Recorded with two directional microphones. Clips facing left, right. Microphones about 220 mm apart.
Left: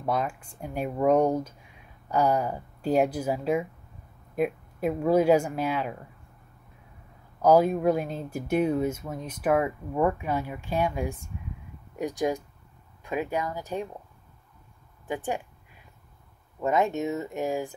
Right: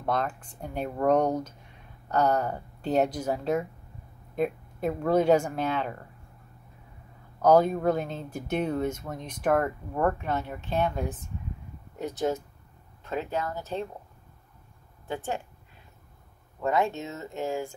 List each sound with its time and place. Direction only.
0.0 s speech: 10° left (ahead or behind)
7.4 s speech: 10° left (ahead or behind)
15.0 s speech: 15° left (ahead or behind)
16.6 s speech: 20° left (ahead or behind)